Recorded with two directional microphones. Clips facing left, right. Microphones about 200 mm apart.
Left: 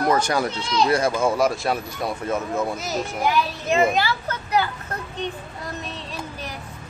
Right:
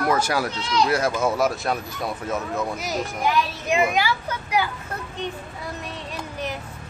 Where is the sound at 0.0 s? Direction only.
5° right (ahead or behind).